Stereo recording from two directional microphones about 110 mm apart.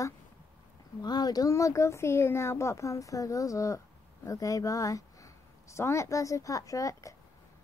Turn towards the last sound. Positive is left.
turn(degrees=30)  # may be behind; listen again after turning